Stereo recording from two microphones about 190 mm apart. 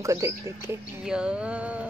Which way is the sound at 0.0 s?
15° right (ahead or behind).